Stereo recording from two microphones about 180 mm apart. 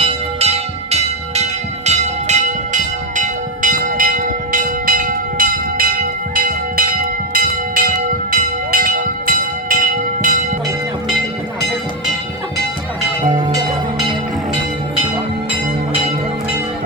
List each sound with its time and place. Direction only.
0.0 s bell: 35° right (ahead or behind)